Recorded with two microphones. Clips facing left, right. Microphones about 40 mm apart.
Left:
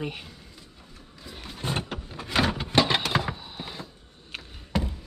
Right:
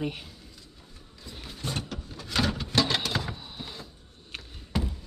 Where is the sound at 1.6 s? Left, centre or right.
Left.